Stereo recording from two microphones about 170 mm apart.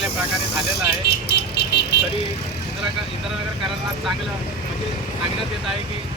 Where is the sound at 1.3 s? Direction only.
70° left (ahead or behind).